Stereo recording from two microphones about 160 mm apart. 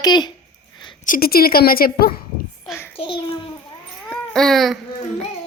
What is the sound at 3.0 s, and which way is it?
Speech, 30° left (ahead or behind).